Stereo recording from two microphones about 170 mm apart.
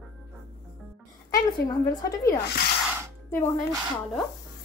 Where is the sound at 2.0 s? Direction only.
20° left (ahead or behind).